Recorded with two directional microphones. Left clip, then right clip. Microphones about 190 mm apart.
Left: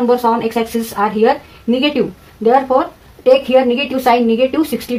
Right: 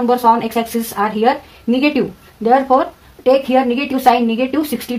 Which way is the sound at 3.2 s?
35° right (ahead or behind).